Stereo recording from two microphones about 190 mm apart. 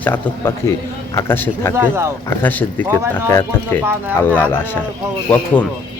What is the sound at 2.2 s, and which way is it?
Speech, 10° left (ahead or behind).